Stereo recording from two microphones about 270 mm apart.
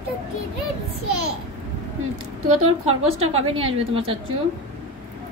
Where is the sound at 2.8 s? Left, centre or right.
Right.